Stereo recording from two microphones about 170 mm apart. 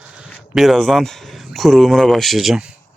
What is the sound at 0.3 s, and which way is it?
Speech, 5° right (ahead or behind).